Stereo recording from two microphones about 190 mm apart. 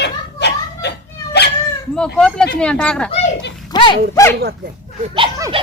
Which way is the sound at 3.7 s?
25° left (ahead or behind).